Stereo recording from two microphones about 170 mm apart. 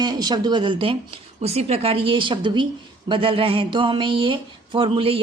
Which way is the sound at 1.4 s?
35° right (ahead or behind).